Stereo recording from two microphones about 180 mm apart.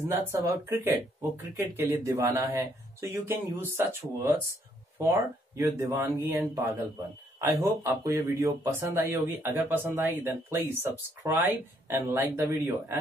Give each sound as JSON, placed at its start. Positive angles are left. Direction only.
{"t": 0.1, "sound": "speech", "side_deg": -15}